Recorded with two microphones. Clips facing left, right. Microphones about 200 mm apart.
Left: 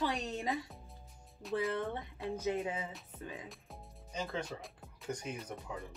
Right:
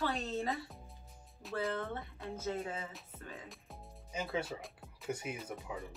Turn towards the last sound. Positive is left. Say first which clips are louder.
# even
turn(degrees=-5)  # may be behind; listen again after turning